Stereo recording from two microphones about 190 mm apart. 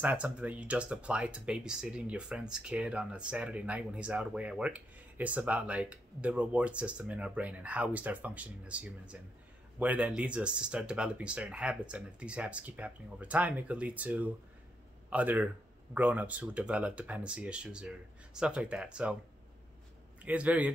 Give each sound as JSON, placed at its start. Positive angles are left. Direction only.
{"t": 0.0, "sound": "speech", "side_deg": -5}
{"t": 20.2, "sound": "speech", "side_deg": -5}